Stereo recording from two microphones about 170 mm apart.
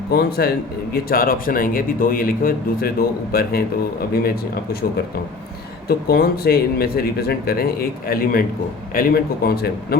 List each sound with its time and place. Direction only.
0.1 s speech: 65° left (ahead or behind)
4.7 s speech: 65° left (ahead or behind)